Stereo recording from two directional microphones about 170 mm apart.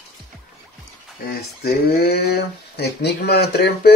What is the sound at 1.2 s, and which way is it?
Speech, 70° left (ahead or behind).